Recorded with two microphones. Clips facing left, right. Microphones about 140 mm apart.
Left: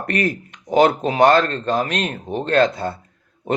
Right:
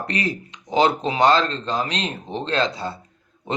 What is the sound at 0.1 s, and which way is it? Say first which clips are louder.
Speech: left 7 dB; 55° left (ahead or behind).